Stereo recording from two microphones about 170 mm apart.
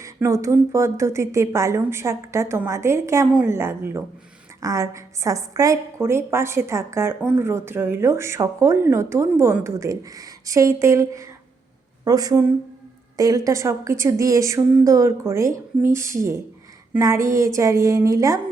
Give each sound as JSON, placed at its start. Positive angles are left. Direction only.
{"t": 0.0, "sound": "a woman's voice", "side_deg": -20}